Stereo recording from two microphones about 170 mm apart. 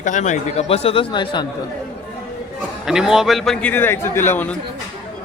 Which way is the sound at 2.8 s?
5° right (ahead or behind).